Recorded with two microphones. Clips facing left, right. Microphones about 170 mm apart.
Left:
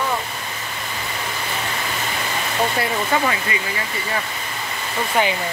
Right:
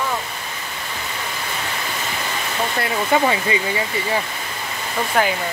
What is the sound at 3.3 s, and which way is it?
Speech, 25° right (ahead or behind).